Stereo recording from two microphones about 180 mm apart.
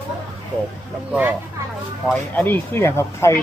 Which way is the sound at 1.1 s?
10° right (ahead or behind).